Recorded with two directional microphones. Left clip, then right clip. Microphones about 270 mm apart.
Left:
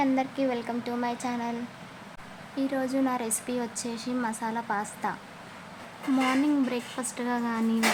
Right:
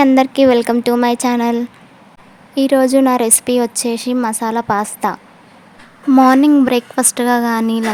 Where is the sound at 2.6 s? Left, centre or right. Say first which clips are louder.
Right 17 dB; right.